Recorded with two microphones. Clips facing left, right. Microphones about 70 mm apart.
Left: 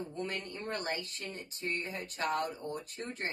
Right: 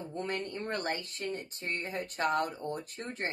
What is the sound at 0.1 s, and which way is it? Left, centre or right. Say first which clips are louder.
Speech: right 3 dB; right.